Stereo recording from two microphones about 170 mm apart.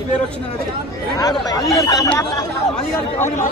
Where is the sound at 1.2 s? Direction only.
20° left (ahead or behind).